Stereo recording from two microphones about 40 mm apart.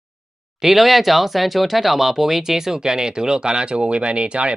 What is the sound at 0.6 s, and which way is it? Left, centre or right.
Speech, centre.